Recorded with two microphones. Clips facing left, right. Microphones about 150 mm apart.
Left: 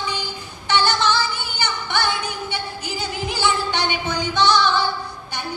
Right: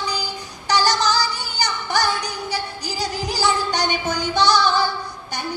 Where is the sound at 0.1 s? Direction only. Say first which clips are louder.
Right 1 dB; 40° right (ahead or behind).